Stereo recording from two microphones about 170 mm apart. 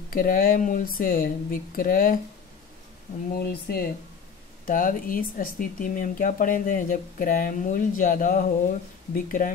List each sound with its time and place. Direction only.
0.1 s speech: 55° left (ahead or behind)
3.3 s speech: 65° left (ahead or behind)
4.6 s speech: 55° left (ahead or behind)